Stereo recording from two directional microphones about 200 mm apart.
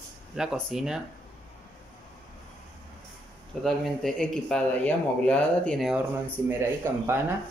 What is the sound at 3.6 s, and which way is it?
Speech, centre (ahead or behind).